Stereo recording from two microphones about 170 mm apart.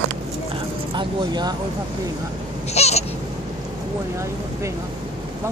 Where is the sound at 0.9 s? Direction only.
25° right (ahead or behind).